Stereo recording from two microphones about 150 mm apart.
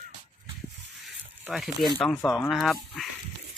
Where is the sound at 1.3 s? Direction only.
10° right (ahead or behind).